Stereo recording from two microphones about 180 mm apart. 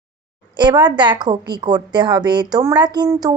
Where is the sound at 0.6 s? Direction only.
25° right (ahead or behind).